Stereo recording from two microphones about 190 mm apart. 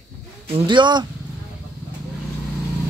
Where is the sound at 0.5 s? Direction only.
25° right (ahead or behind).